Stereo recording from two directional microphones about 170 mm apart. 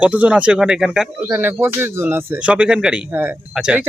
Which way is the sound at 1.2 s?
15° right (ahead or behind).